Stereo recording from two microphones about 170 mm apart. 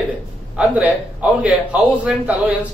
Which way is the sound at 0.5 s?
5° right (ahead or behind).